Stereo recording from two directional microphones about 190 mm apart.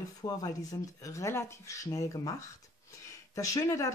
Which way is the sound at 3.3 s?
15° left (ahead or behind).